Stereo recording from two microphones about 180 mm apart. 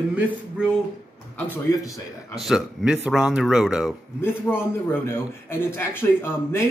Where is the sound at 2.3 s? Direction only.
Centre (ahead or behind).